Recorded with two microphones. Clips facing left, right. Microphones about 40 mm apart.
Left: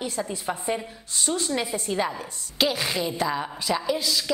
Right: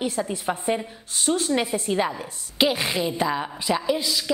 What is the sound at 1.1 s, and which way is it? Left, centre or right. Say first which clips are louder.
A woman's voice: right 4 dB; right.